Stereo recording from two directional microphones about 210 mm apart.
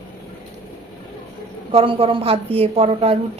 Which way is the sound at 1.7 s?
25° right (ahead or behind).